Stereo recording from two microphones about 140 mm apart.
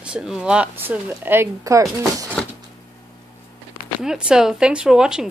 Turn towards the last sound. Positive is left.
turn(degrees=-5)  # may be behind; listen again after turning